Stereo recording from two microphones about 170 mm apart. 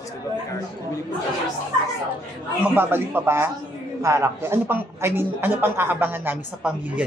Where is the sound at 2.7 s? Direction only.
10° right (ahead or behind).